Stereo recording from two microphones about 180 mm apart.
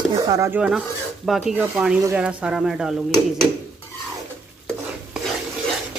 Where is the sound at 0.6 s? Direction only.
Centre (ahead or behind).